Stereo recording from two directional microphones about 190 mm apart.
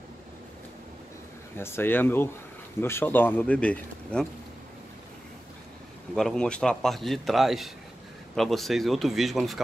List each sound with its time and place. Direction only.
1.6 s speech: 10° left (ahead or behind)
6.1 s a man's voice: 5° left (ahead or behind)